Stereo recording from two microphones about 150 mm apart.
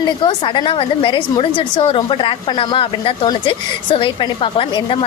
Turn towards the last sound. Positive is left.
turn(degrees=35)  # may be behind; listen again after turning